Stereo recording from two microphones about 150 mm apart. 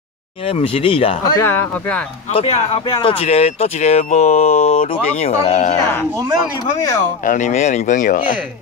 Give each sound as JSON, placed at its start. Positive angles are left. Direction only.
{"t": 0.6, "sound": "speech", "side_deg": 40}
{"t": 1.4, "sound": "speech", "side_deg": 15}
{"t": 2.3, "sound": "speech", "side_deg": 45}
{"t": 7.2, "sound": "speech", "side_deg": 55}